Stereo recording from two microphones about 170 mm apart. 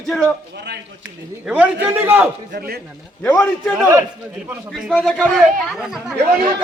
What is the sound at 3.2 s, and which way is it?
Speech, 10° left (ahead or behind).